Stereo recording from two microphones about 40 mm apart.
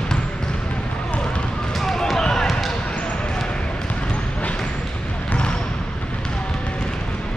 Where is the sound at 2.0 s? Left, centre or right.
Centre.